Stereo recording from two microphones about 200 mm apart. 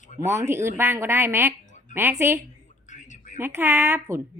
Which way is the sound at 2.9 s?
40° left (ahead or behind).